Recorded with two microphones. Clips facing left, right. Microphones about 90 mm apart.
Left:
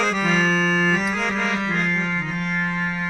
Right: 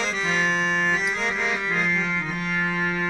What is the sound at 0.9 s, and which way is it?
Music, 45° left (ahead or behind).